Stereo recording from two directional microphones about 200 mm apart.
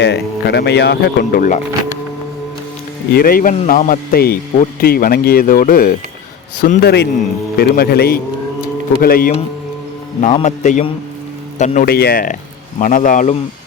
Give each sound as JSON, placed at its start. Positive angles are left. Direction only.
{"t": 0.0, "sound": "speech", "side_deg": 60}
{"t": 3.1, "sound": "speech", "side_deg": 50}
{"t": 10.2, "sound": "a man's voice", "side_deg": 35}